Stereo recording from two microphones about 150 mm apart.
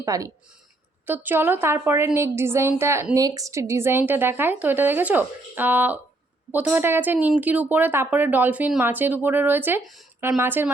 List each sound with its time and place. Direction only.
0.0 s speech: 20° right (ahead or behind)